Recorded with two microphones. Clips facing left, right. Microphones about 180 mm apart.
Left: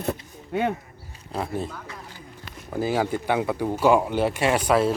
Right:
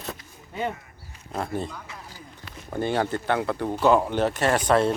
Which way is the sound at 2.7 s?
5° left (ahead or behind).